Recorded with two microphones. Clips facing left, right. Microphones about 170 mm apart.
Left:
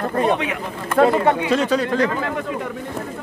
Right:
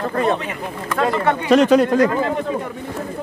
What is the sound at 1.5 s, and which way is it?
Speech, 65° right (ahead or behind).